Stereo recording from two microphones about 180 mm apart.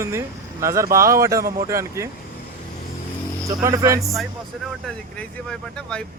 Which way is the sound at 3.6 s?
20° right (ahead or behind).